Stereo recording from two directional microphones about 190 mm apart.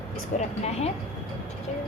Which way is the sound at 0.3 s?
40° left (ahead or behind).